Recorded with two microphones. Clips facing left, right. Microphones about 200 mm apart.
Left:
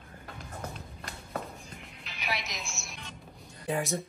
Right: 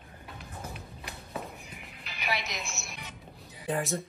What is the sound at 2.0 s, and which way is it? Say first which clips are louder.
Music: right 2 dB; centre (ahead or behind).